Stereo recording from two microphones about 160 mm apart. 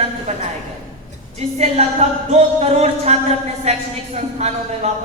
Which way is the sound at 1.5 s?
45° right (ahead or behind).